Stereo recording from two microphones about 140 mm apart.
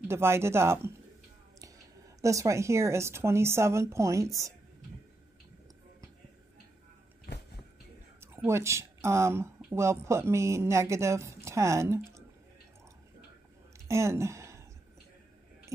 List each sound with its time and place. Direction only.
0.1 s speech: 20° right (ahead or behind)
2.2 s speech: 20° right (ahead or behind)
8.2 s speech: 15° right (ahead or behind)
13.7 s a sound: 20° right (ahead or behind)